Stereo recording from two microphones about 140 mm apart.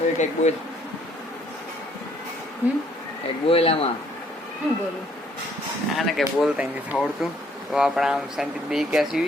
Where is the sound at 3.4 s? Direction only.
45° left (ahead or behind).